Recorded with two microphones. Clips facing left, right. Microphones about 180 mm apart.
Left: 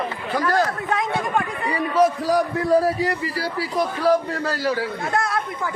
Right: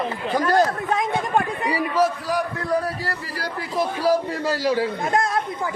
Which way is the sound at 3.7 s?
10° right (ahead or behind).